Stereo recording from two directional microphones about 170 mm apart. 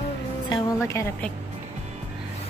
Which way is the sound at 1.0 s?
15° left (ahead or behind).